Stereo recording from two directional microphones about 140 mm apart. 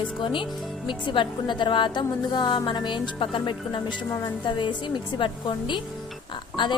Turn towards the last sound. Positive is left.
turn(degrees=35)  # may be behind; listen again after turning